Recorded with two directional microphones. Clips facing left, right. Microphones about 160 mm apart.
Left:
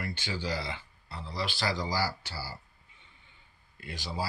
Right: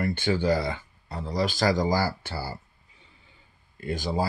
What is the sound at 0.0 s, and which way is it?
Speech, 55° right (ahead or behind).